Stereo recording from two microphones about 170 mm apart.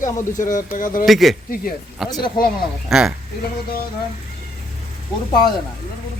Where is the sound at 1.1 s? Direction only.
Centre (ahead or behind).